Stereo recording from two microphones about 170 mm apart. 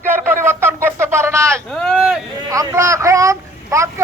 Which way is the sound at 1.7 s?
5° left (ahead or behind).